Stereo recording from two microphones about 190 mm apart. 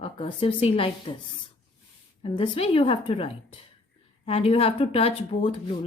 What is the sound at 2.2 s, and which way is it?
A woman's voice, 30° left (ahead or behind).